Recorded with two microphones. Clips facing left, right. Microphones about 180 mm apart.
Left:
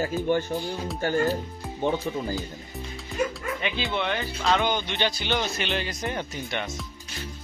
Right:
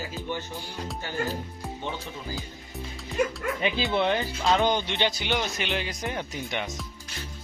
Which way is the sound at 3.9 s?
30° right (ahead or behind).